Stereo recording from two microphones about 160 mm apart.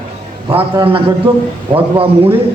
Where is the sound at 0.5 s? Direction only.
35° right (ahead or behind).